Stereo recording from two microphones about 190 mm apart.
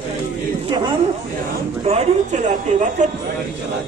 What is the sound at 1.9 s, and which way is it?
A woman's voice, 35° right (ahead or behind).